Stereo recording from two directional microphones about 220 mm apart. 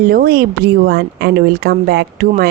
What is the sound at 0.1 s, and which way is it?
Speech, 45° right (ahead or behind).